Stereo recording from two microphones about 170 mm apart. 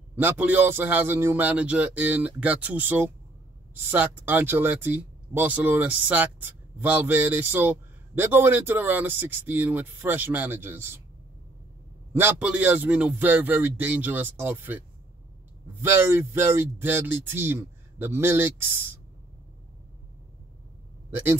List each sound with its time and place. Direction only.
0.1 s speech: 10° right (ahead or behind)
12.1 s speech: 10° right (ahead or behind)
21.1 s a man's voice: 10° right (ahead or behind)